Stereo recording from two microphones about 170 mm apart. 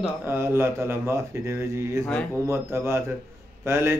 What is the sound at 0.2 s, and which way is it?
Speech, 15° right (ahead or behind).